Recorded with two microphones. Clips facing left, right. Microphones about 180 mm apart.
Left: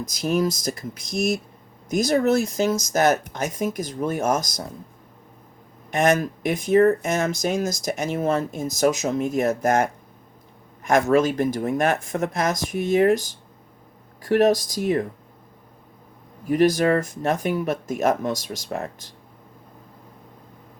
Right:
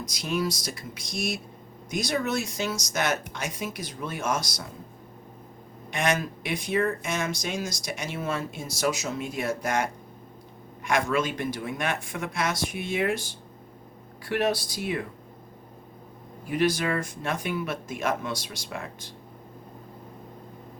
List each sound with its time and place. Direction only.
0.3 s speech: 45° left (ahead or behind)
1.9 s speech: 45° left (ahead or behind)
5.9 s speech: 45° left (ahead or behind)
10.8 s speech: 40° left (ahead or behind)
16.5 s speech: 40° left (ahead or behind)